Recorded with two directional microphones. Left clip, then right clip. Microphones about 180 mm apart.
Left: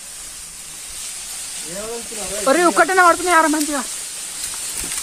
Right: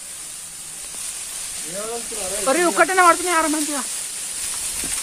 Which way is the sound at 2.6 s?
25° left (ahead or behind).